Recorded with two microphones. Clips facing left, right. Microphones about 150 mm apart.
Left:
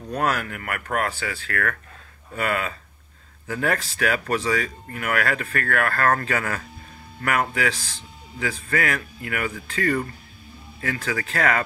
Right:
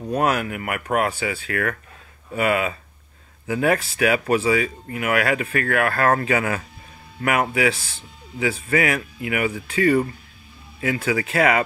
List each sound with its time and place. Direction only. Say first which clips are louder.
0.0 s speech: right 4 dB; 15° right (ahead or behind)